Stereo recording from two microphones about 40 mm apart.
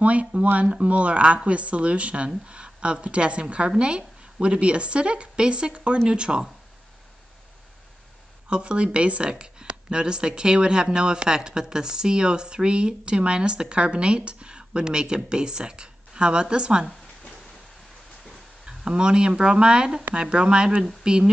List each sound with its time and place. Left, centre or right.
0.0 s speech: right
8.5 s speech: right
18.7 s speech: right